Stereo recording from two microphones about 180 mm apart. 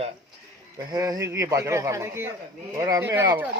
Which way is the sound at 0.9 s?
20° right (ahead or behind).